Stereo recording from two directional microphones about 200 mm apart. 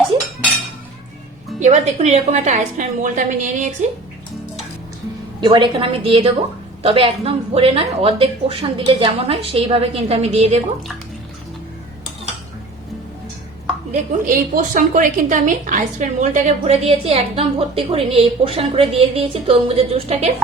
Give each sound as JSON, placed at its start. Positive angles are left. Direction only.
{"t": 1.5, "sound": "a woman's voice", "side_deg": -35}
{"t": 5.4, "sound": "a woman's voice", "side_deg": -25}
{"t": 13.9, "sound": "a woman's voice", "side_deg": -45}